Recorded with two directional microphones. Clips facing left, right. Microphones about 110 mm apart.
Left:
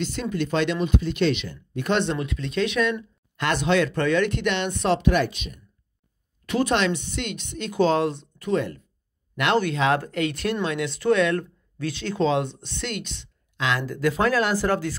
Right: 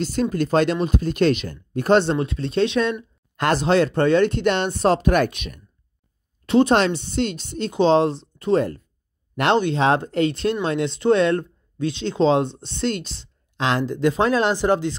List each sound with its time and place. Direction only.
0.0 s speech: 40° right (ahead or behind); by 5.6 s 60° right (ahead or behind)
6.4 s speech: 30° right (ahead or behind)